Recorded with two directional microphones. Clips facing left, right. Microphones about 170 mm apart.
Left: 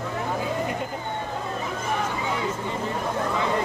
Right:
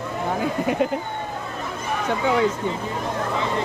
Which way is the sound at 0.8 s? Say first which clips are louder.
Right 10 dB; 80° right.